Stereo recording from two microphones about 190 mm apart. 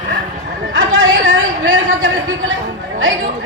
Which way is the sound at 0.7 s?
90° right.